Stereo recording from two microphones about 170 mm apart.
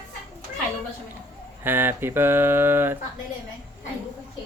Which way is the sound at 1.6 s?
10° right (ahead or behind).